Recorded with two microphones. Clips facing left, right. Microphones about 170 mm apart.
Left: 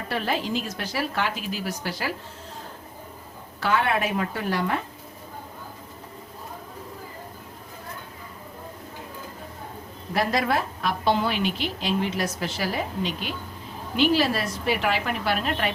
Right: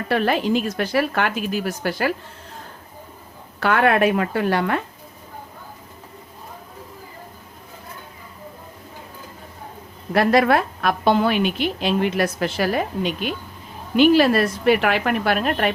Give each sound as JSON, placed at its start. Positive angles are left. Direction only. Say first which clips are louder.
{"t": 0.1, "sound": "a woman's voice", "louder": "right 7 dB", "side_deg": -65}
{"t": 3.6, "sound": "a woman's voice", "louder": "right 6 dB", "side_deg": -60}
{"t": 10.2, "sound": "a woman's voice", "louder": "right 7 dB", "side_deg": -65}